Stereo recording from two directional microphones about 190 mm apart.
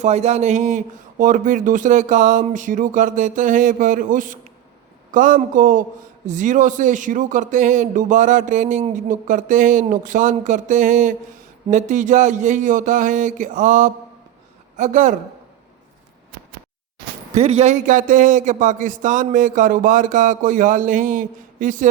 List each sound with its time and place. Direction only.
0.0 s a man's voice: 35° right (ahead or behind)
17.3 s speech: 35° right (ahead or behind)